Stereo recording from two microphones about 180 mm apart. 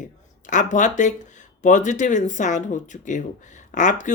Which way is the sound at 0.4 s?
45° left (ahead or behind).